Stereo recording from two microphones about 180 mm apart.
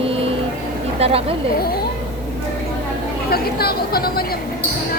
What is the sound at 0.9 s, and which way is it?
Speech, 35° right (ahead or behind).